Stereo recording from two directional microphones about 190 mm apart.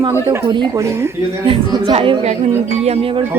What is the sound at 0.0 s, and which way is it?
Speech, 15° right (ahead or behind).